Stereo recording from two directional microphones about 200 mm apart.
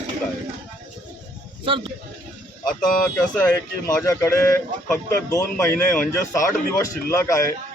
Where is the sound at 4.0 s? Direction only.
15° left (ahead or behind).